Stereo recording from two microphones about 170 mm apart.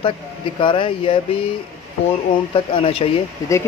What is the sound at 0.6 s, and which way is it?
Speech, 30° left (ahead or behind).